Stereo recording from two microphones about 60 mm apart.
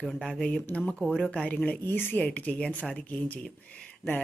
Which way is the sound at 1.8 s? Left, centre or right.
Left.